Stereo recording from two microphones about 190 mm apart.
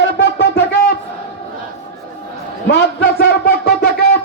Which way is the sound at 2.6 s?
60° left (ahead or behind).